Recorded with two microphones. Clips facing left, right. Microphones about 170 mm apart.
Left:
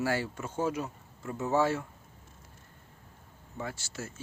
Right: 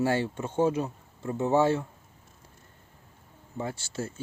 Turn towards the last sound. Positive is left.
turn(degrees=-30)  # may be behind; listen again after turning